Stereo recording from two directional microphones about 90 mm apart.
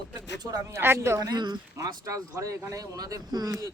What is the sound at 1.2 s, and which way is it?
Speech, 55° right (ahead or behind).